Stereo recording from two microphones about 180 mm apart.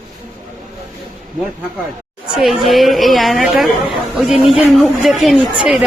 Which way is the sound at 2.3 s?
Centre (ahead or behind).